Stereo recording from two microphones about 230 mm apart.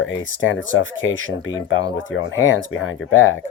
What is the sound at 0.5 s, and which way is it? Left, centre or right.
Speech, left.